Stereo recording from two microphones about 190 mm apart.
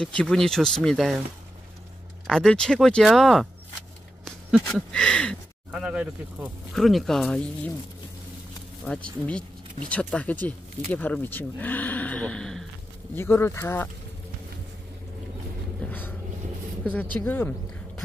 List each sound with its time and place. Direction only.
0.0 s speech: 5° left (ahead or behind)
2.2 s speech: 5° left (ahead or behind)
8.8 s speech: 5° left (ahead or behind)
15.8 s vehicle: 10° left (ahead or behind)
16.8 s speech: 10° left (ahead or behind)